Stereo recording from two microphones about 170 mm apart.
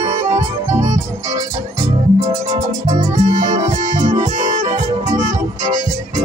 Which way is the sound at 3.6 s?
25° right (ahead or behind).